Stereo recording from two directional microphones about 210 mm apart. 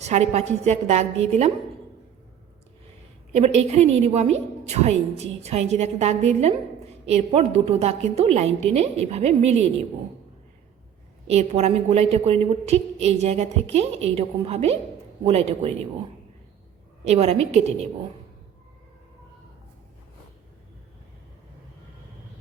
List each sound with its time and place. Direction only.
0.0 s a woman's voice: 30° right (ahead or behind)
3.3 s a woman's voice: 30° right (ahead or behind)
11.3 s a woman's voice: 30° right (ahead or behind)
17.0 s a woman's voice: 30° right (ahead or behind)